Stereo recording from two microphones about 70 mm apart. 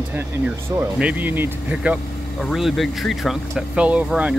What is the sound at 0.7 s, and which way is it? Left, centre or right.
Speech, right.